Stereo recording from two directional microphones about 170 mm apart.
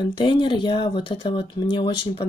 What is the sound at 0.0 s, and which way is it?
Speech, 30° left (ahead or behind).